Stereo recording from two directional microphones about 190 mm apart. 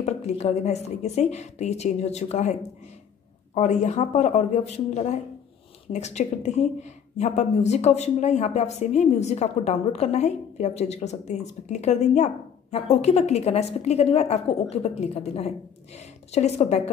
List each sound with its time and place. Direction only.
0.0 s a woman's voice: 35° left (ahead or behind)
3.5 s a woman's voice: 35° left (ahead or behind)